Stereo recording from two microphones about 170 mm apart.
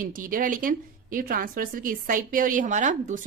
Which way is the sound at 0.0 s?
55° right (ahead or behind).